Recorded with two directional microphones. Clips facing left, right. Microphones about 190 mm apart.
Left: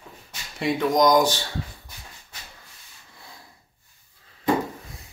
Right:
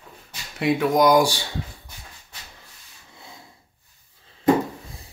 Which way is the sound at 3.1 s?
20° right (ahead or behind).